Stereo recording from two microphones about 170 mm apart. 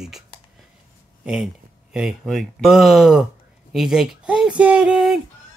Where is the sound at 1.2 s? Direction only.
5° right (ahead or behind).